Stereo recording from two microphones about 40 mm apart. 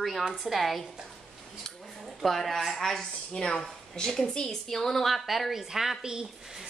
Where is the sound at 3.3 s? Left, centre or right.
Left; by 6.7 s centre.